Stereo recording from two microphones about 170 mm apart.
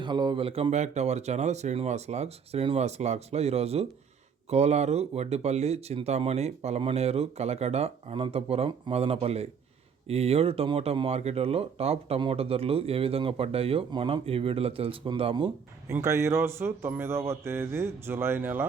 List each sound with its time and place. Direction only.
0.0 s speech: 25° right (ahead or behind)
15.9 s speech: 15° right (ahead or behind)